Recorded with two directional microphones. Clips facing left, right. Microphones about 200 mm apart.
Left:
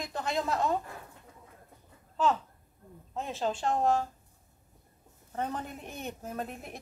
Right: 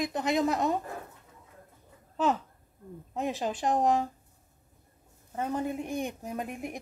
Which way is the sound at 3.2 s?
15° right (ahead or behind).